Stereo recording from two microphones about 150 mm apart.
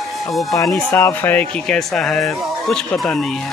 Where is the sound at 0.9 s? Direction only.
15° left (ahead or behind).